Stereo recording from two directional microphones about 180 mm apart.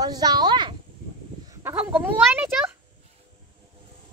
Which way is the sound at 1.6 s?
10° right (ahead or behind).